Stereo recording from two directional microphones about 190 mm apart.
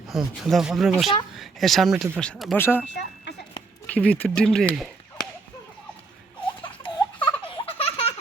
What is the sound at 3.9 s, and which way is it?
Speech, 10° left (ahead or behind).